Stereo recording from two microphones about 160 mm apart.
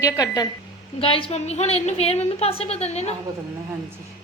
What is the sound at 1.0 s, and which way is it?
A woman's voice, 35° left (ahead or behind).